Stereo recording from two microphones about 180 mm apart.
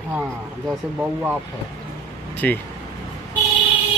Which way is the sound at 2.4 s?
10° left (ahead or behind).